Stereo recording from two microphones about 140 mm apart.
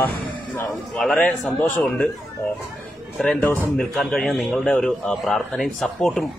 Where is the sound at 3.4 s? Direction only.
15° left (ahead or behind).